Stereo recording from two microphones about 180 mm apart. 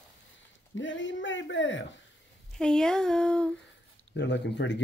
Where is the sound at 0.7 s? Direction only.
90° left.